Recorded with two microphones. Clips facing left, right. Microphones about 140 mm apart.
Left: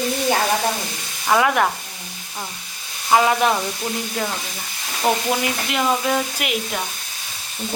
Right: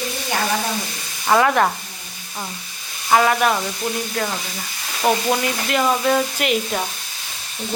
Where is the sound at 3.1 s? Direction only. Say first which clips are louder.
Even; 15° left (ahead or behind).